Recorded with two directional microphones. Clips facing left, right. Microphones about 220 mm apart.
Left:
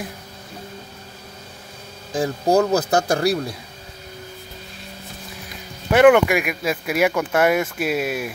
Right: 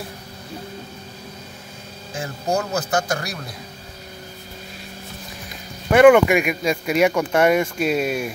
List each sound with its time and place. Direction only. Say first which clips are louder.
2.1 s speech: left 6 dB; 35° left (ahead or behind)
5.9 s speech: right 1 dB; 5° left (ahead or behind)